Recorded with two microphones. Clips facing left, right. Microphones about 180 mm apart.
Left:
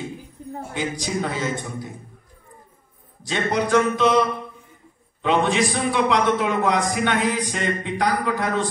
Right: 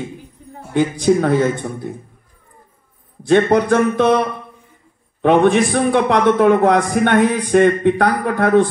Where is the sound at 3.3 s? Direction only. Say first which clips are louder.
Right 8 dB; 55° right (ahead or behind).